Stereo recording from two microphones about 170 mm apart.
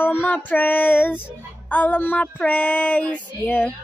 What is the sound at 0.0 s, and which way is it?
Child singing, 10° left (ahead or behind).